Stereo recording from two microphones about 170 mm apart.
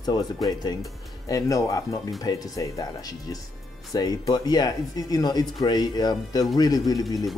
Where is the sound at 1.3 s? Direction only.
20° left (ahead or behind).